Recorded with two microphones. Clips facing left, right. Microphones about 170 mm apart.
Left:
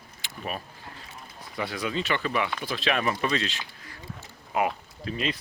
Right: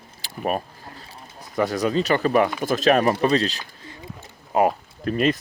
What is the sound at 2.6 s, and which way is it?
Speech, 45° right (ahead or behind).